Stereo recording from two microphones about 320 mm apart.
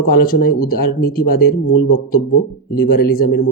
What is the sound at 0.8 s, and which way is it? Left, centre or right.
Speech, left.